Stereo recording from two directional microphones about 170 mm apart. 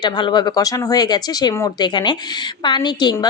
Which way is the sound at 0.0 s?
25° left (ahead or behind).